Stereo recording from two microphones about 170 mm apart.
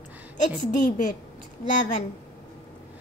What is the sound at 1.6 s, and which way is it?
Speech, 45° left (ahead or behind).